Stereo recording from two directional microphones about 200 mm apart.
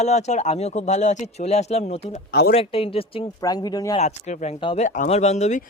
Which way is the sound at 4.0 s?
35° left (ahead or behind).